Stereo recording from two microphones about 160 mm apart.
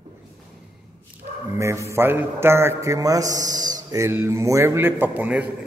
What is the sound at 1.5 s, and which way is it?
A man's voice, 15° right (ahead or behind).